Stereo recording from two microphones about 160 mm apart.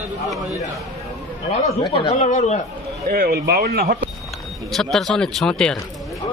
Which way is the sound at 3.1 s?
70° right (ahead or behind).